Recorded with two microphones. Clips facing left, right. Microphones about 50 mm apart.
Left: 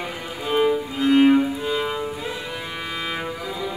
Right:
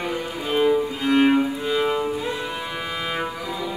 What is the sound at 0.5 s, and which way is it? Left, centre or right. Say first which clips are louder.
Music: right 1 dB; centre.